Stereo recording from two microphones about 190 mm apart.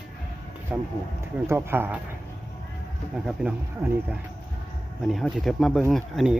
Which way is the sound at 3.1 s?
5° right (ahead or behind).